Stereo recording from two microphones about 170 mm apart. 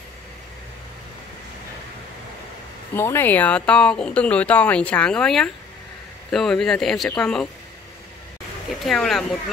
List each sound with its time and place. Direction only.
2.9 s speech: 15° left (ahead or behind)
8.8 s speech: centre (ahead or behind)